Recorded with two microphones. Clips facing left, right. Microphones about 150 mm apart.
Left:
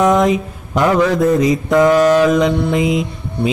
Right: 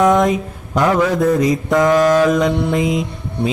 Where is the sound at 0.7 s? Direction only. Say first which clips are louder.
Left 1 dB; centre (ahead or behind).